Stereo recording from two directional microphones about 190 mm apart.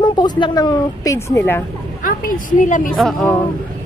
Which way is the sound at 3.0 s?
Centre (ahead or behind).